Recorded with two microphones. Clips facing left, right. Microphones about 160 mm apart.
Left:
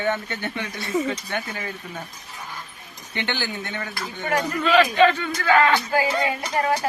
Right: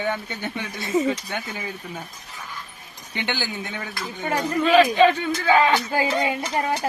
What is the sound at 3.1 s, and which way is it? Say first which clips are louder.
Speech: even; 15° right (ahead or behind).